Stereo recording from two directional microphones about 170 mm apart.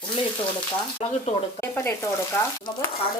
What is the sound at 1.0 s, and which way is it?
Speech, 35° left (ahead or behind).